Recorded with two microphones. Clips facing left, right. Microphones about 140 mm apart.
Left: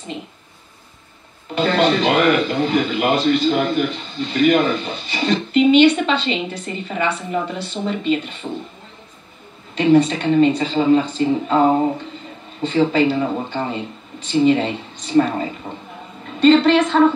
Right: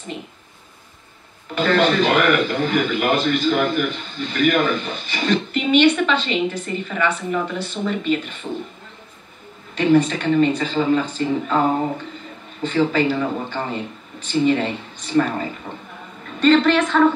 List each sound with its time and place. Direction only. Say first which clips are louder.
1.6 s a man's voice: left 1 dB; 30° left (ahead or behind)
9.8 s speech: left 2 dB; 30° left (ahead or behind)